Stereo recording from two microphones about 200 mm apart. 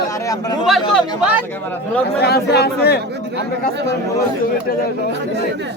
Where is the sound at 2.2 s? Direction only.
55° left (ahead or behind).